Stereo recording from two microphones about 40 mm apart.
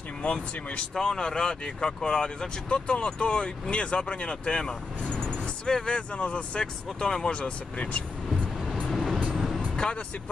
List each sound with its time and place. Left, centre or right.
0.2 s speech: left
0.9 s speech: centre; by 8.0 s left
8.6 s vehicle: centre
9.6 s music: left